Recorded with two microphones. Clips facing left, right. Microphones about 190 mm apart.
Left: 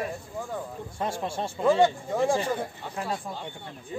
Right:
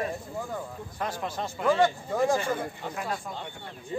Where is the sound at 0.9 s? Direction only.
25° left (ahead or behind).